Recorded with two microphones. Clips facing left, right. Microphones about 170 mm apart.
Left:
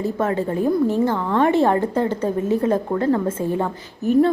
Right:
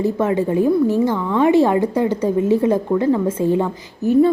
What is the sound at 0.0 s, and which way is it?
A woman's voice, 15° right (ahead or behind).